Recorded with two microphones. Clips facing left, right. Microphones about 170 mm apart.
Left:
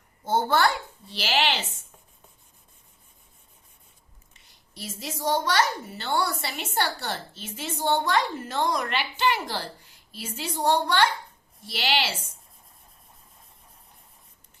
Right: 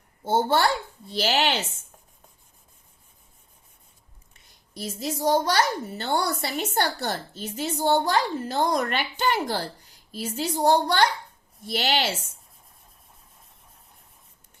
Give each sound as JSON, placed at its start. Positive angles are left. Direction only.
{"t": 0.3, "sound": "a woman's voice", "side_deg": -25}
{"t": 1.0, "sound": "a woman's voice", "side_deg": -45}
{"t": 4.7, "sound": "a woman's voice", "side_deg": -40}